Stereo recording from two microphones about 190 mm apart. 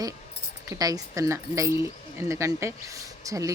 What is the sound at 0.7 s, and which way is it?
Speech, 20° right (ahead or behind).